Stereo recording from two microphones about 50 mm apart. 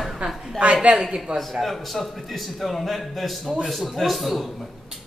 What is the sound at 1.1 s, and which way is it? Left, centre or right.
Speech, centre.